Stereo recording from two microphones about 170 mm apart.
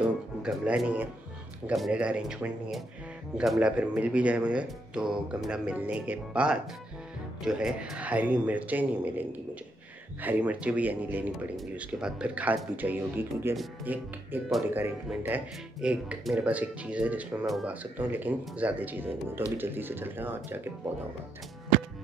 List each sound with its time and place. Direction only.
0.4 s speech: 5° right (ahead or behind)